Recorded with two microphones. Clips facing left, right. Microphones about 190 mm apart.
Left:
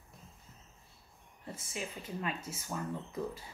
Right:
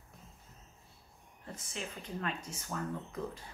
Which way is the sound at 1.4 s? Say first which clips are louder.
Left 2 dB; 10° left (ahead or behind).